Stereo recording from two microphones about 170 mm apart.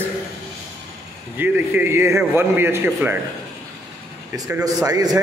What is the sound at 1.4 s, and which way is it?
A man's voice, 10° right (ahead or behind).